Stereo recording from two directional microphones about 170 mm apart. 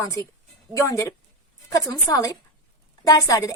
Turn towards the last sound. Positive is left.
turn(degrees=20)  # may be behind; listen again after turning